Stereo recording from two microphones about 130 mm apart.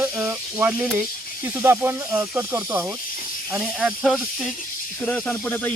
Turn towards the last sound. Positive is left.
turn(degrees=10)  # may be behind; listen again after turning